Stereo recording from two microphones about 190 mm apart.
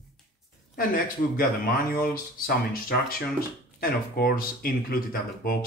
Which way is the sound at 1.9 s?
50° left (ahead or behind).